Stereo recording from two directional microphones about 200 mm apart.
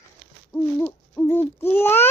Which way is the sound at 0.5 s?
5° left (ahead or behind).